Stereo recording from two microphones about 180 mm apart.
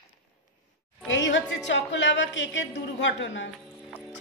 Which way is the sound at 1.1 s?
85° left.